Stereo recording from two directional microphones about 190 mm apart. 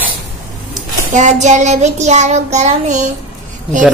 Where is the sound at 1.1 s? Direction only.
40° right (ahead or behind).